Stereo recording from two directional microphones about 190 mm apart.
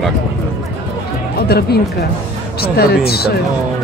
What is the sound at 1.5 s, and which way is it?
Speech, 55° left (ahead or behind).